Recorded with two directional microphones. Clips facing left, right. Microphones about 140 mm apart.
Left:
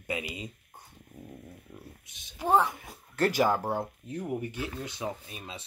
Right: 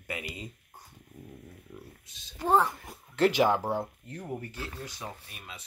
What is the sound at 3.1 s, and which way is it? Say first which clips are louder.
Speech: right 3 dB; 45° left (ahead or behind).